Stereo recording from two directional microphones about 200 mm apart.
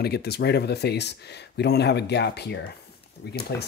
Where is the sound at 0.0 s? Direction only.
55° left (ahead or behind).